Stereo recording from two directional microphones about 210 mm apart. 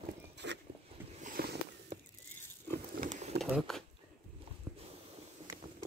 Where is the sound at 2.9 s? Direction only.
35° right (ahead or behind).